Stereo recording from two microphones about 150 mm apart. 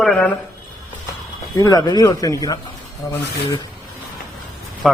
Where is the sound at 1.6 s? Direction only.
25° left (ahead or behind).